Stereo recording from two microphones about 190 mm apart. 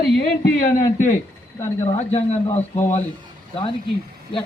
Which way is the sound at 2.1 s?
35° left (ahead or behind).